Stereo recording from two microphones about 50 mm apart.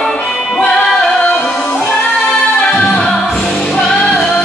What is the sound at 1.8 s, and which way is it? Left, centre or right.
Music, centre.